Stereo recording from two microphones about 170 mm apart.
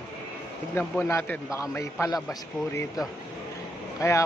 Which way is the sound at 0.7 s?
15° left (ahead or behind).